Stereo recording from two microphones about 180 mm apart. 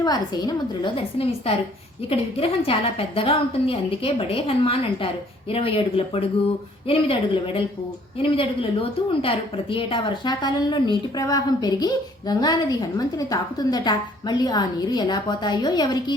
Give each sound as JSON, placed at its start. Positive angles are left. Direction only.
{"t": 0.0, "sound": "a woman's voice", "side_deg": 20}